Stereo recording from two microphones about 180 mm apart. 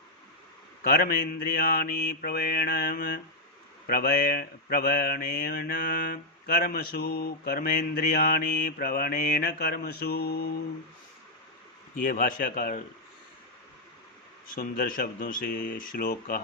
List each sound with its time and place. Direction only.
0.8 s speech: 55° left (ahead or behind)
11.9 s speech: 50° left (ahead or behind)
14.4 s speech: 50° left (ahead or behind)